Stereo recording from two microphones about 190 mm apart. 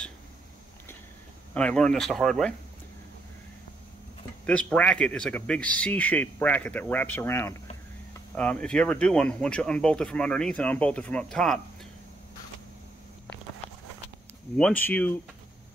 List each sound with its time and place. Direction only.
1.5 s speech: 5° left (ahead or behind)
4.5 s speech: 5° left (ahead or behind)
14.6 s speech: 10° left (ahead or behind)